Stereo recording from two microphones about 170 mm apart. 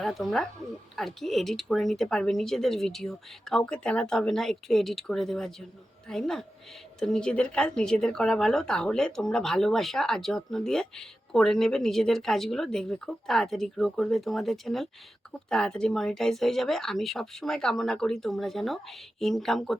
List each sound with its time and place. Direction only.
0.0 s speech: centre (ahead or behind)